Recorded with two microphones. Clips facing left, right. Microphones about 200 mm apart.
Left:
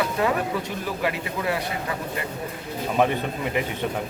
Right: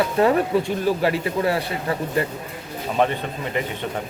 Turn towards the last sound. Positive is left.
turn(degrees=10)  # may be behind; listen again after turning